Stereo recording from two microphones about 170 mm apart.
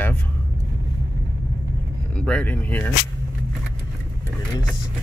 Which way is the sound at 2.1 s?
5° left (ahead or behind).